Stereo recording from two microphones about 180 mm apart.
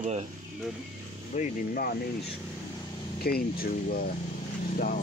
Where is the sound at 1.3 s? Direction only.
50° left (ahead or behind).